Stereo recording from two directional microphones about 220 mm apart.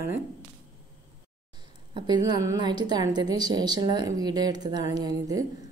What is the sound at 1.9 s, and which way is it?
A woman's voice, 20° right (ahead or behind).